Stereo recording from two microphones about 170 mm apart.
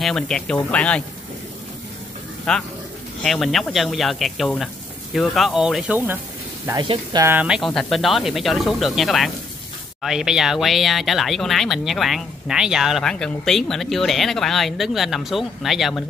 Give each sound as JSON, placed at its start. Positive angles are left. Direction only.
{"t": 0.0, "sound": "speech", "side_deg": 5}
{"t": 2.5, "sound": "speech", "side_deg": 5}
{"t": 6.8, "sound": "speech", "side_deg": -25}
{"t": 7.2, "sound": "speech", "side_deg": -5}